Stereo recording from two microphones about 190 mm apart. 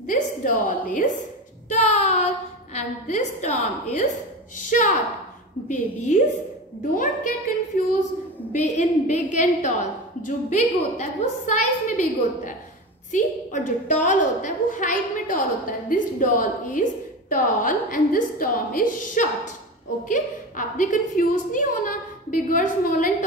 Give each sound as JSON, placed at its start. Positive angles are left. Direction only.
{"t": 0.0, "sound": "a woman's voice", "side_deg": 45}
{"t": 1.7, "sound": "child singing", "side_deg": 35}
{"t": 2.7, "sound": "a woman's voice", "side_deg": 40}
{"t": 8.5, "sound": "a woman's voice", "side_deg": 40}